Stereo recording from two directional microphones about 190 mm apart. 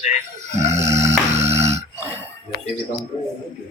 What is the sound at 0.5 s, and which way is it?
Music, 35° right (ahead or behind).